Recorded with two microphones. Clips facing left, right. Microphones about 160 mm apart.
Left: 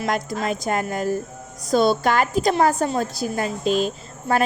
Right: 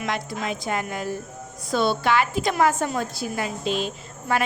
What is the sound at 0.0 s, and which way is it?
A woman's voice, 40° left (ahead or behind).